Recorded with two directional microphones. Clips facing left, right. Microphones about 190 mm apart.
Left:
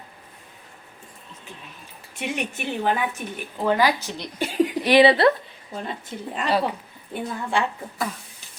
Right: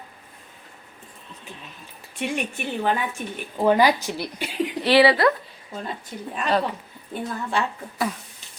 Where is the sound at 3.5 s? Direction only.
15° right (ahead or behind).